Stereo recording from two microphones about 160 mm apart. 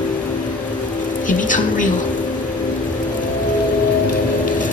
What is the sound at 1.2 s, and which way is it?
Speech, 55° left (ahead or behind).